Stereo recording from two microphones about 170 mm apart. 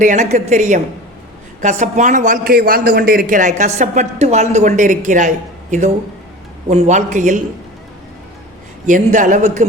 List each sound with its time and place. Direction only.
0.0 s a man's voice: 45° right (ahead or behind)
6.7 s a man's voice: 40° right (ahead or behind)
8.9 s a man's voice: 50° right (ahead or behind)